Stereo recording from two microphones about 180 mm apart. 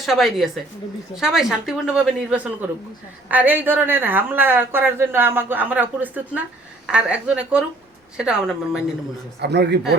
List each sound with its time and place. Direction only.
0.0 s a woman's voice: centre (ahead or behind)
9.4 s a man's voice: 65° right (ahead or behind)